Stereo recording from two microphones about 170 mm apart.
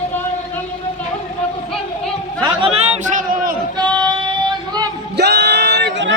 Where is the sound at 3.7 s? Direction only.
25° right (ahead or behind).